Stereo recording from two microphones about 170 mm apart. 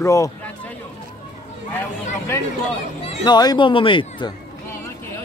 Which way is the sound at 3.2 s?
25° left (ahead or behind).